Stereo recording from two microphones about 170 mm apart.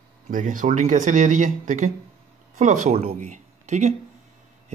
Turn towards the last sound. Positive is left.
turn(degrees=-45)  # may be behind; listen again after turning